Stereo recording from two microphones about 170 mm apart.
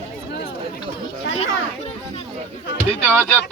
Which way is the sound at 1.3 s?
40° left (ahead or behind).